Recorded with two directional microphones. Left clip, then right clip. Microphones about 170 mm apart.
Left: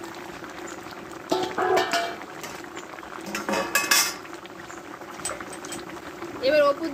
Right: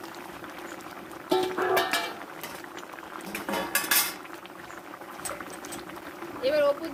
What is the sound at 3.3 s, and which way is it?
Cutlery, 20° left (ahead or behind).